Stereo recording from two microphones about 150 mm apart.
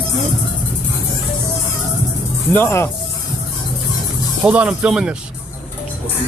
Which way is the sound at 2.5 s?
15° left (ahead or behind).